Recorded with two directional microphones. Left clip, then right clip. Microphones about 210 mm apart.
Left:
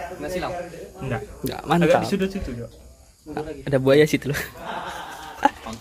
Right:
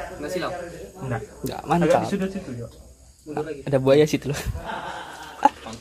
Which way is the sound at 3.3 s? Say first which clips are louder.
Even; 5° left (ahead or behind).